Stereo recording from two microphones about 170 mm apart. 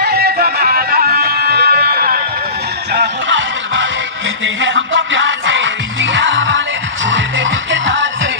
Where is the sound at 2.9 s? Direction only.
85° right.